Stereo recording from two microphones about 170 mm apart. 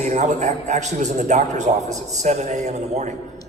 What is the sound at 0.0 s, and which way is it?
A man's voice, 45° right (ahead or behind).